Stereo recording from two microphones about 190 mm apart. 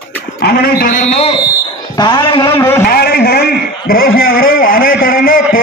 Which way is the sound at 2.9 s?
55° left (ahead or behind).